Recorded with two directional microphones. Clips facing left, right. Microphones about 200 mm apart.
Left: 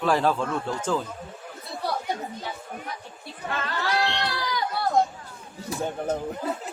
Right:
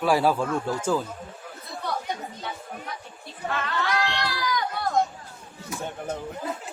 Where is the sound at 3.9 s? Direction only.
25° left (ahead or behind).